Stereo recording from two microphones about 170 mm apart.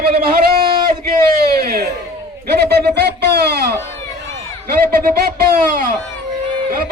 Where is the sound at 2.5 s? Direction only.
70° right (ahead or behind).